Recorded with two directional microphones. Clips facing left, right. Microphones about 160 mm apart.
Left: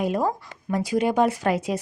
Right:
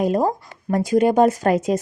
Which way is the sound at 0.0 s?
40° right (ahead or behind).